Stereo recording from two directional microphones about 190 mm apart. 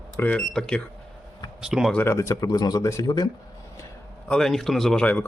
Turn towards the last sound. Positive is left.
turn(degrees=10)  # may be behind; listen again after turning